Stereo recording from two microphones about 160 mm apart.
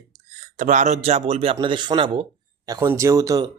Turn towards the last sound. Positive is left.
turn(degrees=-20)  # may be behind; listen again after turning